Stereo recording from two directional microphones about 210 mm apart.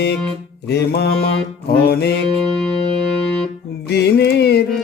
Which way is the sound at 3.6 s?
50° left (ahead or behind).